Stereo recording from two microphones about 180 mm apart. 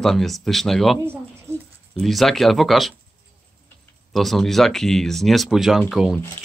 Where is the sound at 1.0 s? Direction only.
15° right (ahead or behind).